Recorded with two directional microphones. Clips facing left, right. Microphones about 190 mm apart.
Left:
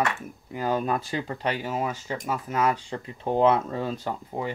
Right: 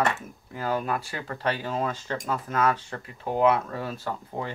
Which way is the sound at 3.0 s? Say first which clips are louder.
Left 2 dB; 25° left (ahead or behind).